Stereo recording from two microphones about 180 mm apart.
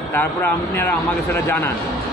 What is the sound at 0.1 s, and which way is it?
Speech, 10° left (ahead or behind).